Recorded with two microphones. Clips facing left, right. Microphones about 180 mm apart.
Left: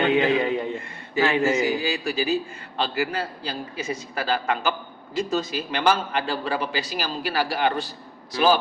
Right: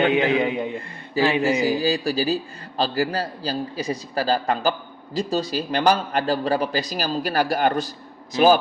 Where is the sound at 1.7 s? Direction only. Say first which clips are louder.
Right 4 dB; 35° right (ahead or behind).